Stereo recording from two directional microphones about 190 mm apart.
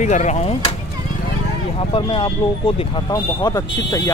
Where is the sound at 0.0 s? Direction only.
40° left (ahead or behind).